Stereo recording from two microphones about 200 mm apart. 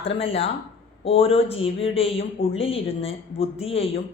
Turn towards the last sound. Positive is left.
turn(degrees=30)  # may be behind; listen again after turning